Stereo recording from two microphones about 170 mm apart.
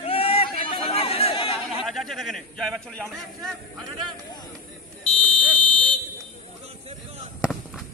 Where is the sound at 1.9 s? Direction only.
Centre (ahead or behind).